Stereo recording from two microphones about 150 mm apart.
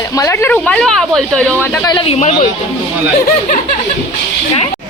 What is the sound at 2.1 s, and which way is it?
Speech, 50° left (ahead or behind).